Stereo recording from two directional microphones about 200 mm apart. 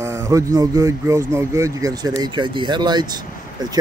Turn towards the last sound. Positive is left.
turn(degrees=-20)  # may be behind; listen again after turning